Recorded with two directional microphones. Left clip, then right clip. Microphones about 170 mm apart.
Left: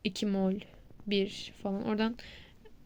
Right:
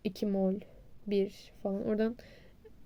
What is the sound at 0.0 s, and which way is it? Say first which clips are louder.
A woman's voice: even; 5° right (ahead or behind).